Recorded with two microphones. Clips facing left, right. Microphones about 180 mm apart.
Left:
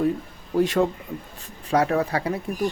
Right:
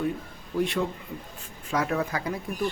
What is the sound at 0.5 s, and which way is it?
Speech, 40° left (ahead or behind).